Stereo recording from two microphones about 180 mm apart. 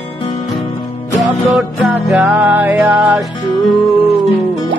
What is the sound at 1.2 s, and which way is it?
Music, centre (ahead or behind).